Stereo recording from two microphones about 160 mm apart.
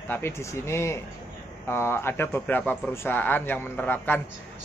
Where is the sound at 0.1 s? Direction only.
15° left (ahead or behind).